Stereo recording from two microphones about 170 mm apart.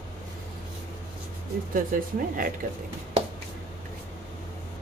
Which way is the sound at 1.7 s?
55° right (ahead or behind).